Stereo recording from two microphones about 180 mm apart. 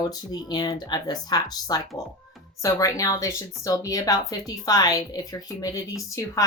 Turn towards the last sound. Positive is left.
turn(degrees=20)  # may be behind; listen again after turning